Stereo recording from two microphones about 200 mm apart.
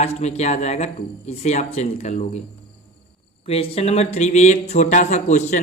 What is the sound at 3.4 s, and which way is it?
Speech, 30° left (ahead or behind).